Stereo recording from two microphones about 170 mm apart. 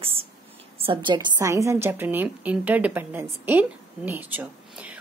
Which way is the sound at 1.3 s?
15° right (ahead or behind).